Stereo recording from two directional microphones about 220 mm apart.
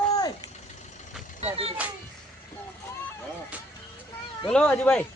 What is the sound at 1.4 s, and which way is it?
Speech, 25° right (ahead or behind).